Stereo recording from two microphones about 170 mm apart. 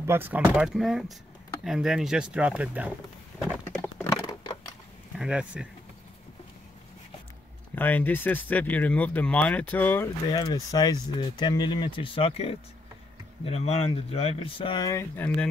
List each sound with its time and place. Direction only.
0.0 s speech: 15° right (ahead or behind)
3.8 s a sound: 15° left (ahead or behind)
5.2 s speech: 5° right (ahead or behind)
7.7 s speech: 10° left (ahead or behind)